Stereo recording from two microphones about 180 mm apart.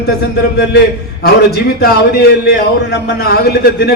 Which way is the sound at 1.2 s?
65° left (ahead or behind).